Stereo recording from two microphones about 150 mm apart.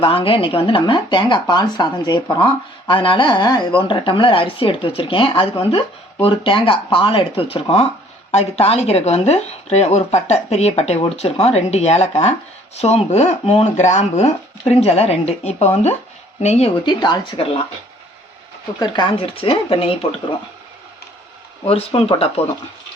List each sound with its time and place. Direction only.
0.0 s speech: 40° left (ahead or behind)
16.8 s speech: 30° left (ahead or behind)
18.8 s speech: 30° left (ahead or behind)
21.7 s speech: 40° left (ahead or behind)